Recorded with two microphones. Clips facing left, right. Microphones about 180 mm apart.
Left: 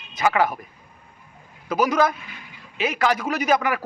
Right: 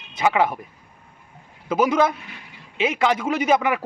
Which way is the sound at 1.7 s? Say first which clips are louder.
Right 1 dB; 25° right (ahead or behind).